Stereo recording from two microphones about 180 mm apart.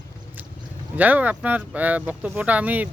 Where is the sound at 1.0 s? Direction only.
10° right (ahead or behind).